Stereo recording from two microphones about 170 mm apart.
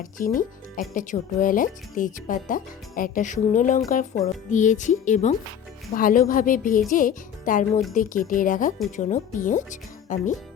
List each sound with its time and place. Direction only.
0.0 s speech: 55° left (ahead or behind)